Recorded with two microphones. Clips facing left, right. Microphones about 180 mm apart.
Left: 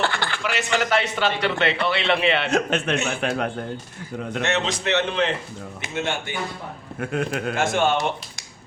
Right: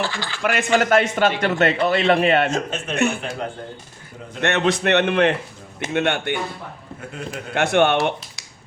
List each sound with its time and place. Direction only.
0.0 s a man's voice: 60° left (ahead or behind)
0.4 s a man's voice: 50° right (ahead or behind)
2.5 s a man's voice: 65° left (ahead or behind)
4.4 s a man's voice: 60° right (ahead or behind)
7.0 s speech: 65° left (ahead or behind)
7.5 s a man's voice: 65° right (ahead or behind)